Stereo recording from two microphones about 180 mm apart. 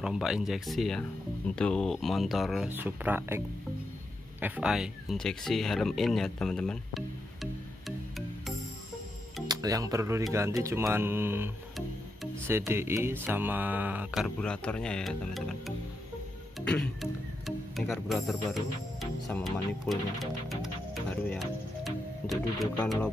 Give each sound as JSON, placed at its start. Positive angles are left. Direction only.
{"t": 0.0, "sound": "speech", "side_deg": -5}
{"t": 9.5, "sound": "speech", "side_deg": -20}
{"t": 11.7, "sound": "music", "side_deg": 0}
{"t": 12.4, "sound": "speech", "side_deg": -15}